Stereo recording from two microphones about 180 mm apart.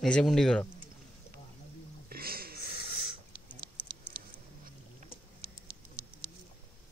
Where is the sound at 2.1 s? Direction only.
55° right (ahead or behind).